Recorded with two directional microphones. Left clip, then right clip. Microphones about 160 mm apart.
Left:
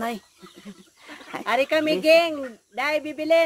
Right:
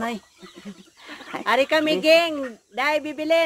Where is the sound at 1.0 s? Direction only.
25° right (ahead or behind).